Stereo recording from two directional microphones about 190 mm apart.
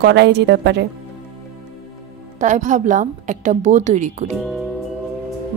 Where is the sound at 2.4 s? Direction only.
40° right (ahead or behind).